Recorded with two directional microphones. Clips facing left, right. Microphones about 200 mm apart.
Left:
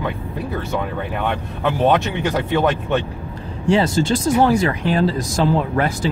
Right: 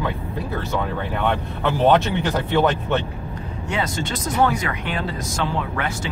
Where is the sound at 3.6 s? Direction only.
30° left (ahead or behind).